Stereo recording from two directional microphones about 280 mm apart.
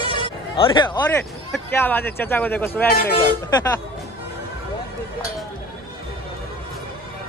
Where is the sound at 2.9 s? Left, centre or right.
Left.